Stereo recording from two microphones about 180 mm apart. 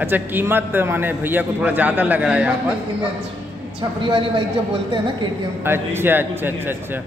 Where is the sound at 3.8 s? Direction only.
25° right (ahead or behind).